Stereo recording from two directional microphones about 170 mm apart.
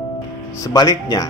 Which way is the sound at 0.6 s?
20° left (ahead or behind).